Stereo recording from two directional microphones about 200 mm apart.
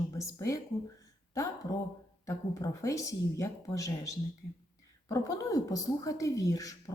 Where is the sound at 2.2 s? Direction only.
15° left (ahead or behind).